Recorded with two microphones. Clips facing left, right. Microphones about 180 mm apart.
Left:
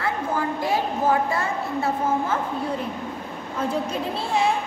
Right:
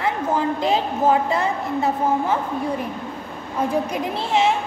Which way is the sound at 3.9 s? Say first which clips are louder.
Right 3 dB; 15° right (ahead or behind).